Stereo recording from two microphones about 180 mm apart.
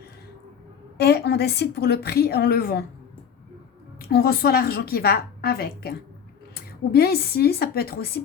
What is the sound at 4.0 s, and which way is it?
Speech, 60° left (ahead or behind).